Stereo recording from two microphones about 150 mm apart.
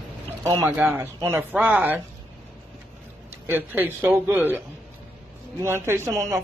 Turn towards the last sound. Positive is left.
turn(degrees=-20)  # may be behind; listen again after turning